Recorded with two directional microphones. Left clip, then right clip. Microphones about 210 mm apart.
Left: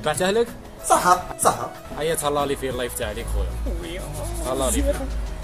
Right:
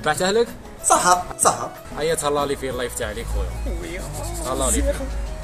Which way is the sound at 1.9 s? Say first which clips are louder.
Right 2 dB; 5° left (ahead or behind).